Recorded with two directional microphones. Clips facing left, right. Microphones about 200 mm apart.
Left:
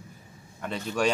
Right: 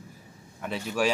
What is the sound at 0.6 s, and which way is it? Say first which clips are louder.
Speech: even; 5° right (ahead or behind).